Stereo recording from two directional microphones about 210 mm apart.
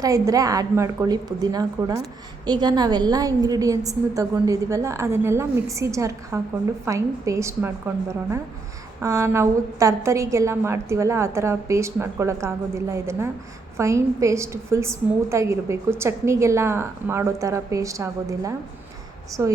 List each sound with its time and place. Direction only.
0.0 s a woman's voice: 15° right (ahead or behind)